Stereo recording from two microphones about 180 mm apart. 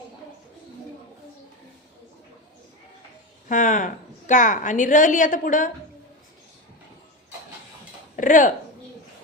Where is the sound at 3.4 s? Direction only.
45° left (ahead or behind).